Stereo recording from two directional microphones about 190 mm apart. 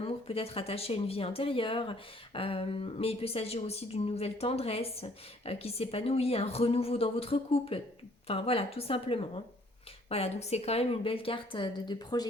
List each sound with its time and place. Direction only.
0.0 s a woman's voice: 30° left (ahead or behind)